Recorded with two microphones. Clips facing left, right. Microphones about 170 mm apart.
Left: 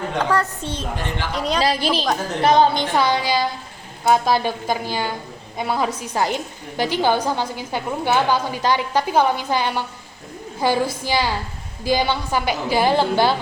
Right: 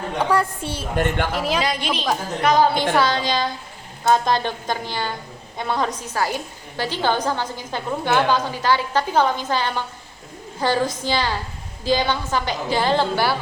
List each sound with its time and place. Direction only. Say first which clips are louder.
0.2 s a woman's voice: right 1 dB; 10° right (ahead or behind)
0.9 s speech: right 5 dB; 55° right (ahead or behind)
1.3 s speech: even; 5° right (ahead or behind)
1.6 s a woman's voice: left 3 dB; 35° left (ahead or behind); by 6.1 s 10° left (ahead or behind)
6.1 s a woman's voice: left 2 dB; 20° left (ahead or behind)